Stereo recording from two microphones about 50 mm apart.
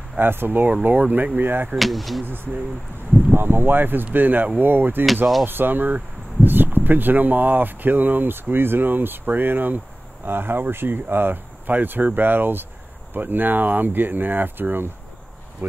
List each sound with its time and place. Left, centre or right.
0.2 s speech: right
1.8 s speech: centre
2.2 s speech: right